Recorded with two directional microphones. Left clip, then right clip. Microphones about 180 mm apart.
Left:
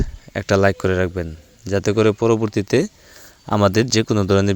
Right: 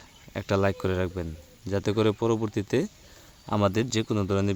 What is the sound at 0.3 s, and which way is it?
Speech, 25° left (ahead or behind).